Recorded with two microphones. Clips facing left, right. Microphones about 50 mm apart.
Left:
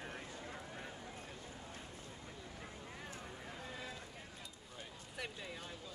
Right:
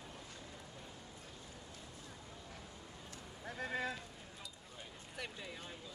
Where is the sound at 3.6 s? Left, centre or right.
Right.